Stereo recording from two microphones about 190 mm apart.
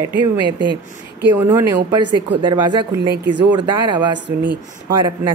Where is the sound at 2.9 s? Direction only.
60° right (ahead or behind).